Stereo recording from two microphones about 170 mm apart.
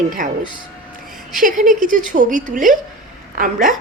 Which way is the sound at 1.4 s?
50° right (ahead or behind).